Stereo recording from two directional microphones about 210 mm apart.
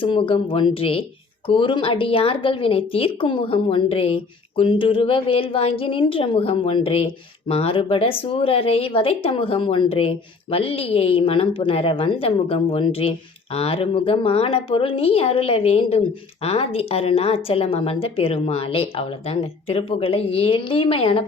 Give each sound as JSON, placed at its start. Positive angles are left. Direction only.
{"t": 0.0, "sound": "speech", "side_deg": 25}